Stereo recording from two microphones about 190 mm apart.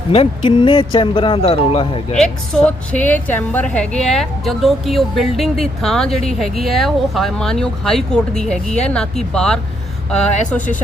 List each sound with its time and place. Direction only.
0.1 s speech: 30° left (ahead or behind)
2.1 s a woman's voice: 5° left (ahead or behind)